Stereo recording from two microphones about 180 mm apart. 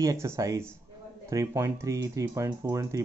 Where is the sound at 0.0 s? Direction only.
15° right (ahead or behind).